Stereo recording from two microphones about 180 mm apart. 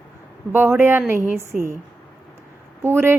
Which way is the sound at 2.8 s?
15° right (ahead or behind).